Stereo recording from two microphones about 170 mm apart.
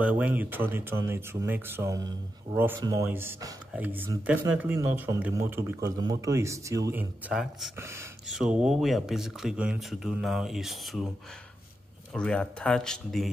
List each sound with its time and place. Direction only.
0.0 s speech: 10° right (ahead or behind)
8.3 s speech: 5° right (ahead or behind)
12.1 s speech: 5° left (ahead or behind)